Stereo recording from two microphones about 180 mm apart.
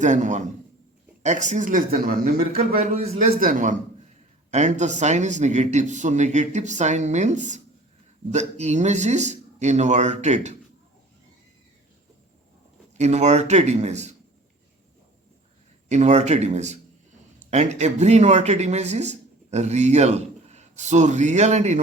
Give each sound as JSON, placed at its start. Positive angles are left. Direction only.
{"t": 0.0, "sound": "speech", "side_deg": -45}
{"t": 2.7, "sound": "speech", "side_deg": -40}
{"t": 13.0, "sound": "speech", "side_deg": -40}
{"t": 15.9, "sound": "speech", "side_deg": -40}